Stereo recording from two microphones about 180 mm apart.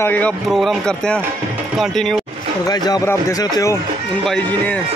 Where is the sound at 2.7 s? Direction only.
20° left (ahead or behind).